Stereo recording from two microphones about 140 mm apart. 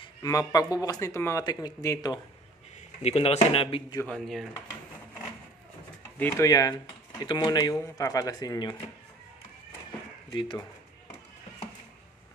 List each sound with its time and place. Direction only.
0.0 s speech: 25° left (ahead or behind)
3.0 s speech: 50° left (ahead or behind)
4.0 s speech: 5° left (ahead or behind)
6.1 s speech: 15° left (ahead or behind)
10.3 s speech: 35° left (ahead or behind)